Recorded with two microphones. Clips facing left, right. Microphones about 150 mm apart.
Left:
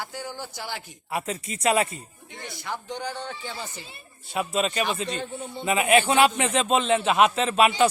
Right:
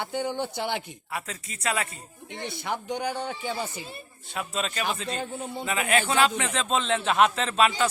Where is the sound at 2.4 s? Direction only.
20° right (ahead or behind).